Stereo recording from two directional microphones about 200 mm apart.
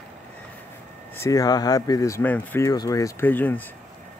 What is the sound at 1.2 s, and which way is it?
Speech, 15° left (ahead or behind).